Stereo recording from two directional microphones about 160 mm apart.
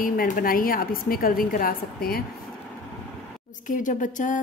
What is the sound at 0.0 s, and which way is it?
A woman's voice, 65° left (ahead or behind).